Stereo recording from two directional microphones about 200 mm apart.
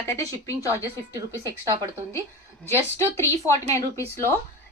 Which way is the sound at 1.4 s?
20° right (ahead or behind).